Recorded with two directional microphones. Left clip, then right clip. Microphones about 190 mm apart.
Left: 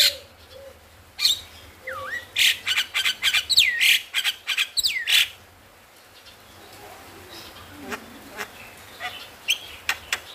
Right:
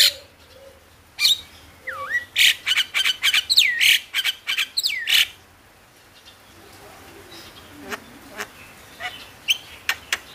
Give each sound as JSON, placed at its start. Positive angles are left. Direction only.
{"t": 1.9, "sound": "bird", "side_deg": -25}
{"t": 8.4, "sound": "insect", "side_deg": -20}
{"t": 9.0, "sound": "bird", "side_deg": -20}